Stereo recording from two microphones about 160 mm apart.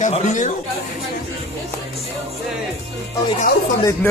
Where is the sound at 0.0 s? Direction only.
50° left (ahead or behind).